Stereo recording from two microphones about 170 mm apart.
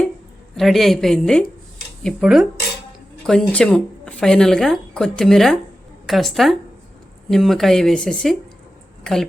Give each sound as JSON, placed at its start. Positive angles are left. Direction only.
{"t": 0.5, "sound": "speech", "side_deg": 0}